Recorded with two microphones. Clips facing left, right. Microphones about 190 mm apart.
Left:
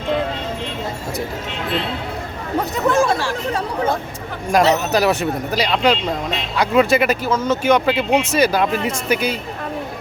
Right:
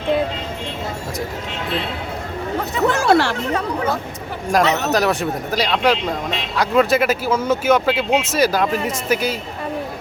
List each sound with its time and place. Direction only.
2.9 s speech: 70° right (ahead or behind)
4.5 s speech: centre (ahead or behind)